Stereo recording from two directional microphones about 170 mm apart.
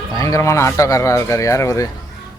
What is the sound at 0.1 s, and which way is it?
Speech, 20° left (ahead or behind).